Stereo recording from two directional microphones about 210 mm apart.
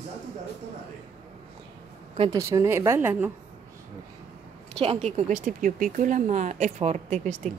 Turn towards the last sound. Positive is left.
turn(degrees=-35)  # may be behind; listen again after turning